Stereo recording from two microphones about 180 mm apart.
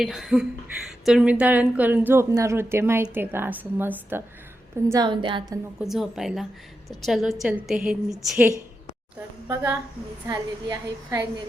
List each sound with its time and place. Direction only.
0.0 s a woman's voice: centre (ahead or behind)
4.9 s a woman's voice: 25° right (ahead or behind)
5.8 s a woman's voice: centre (ahead or behind)
10.2 s a woman's voice: 20° right (ahead or behind)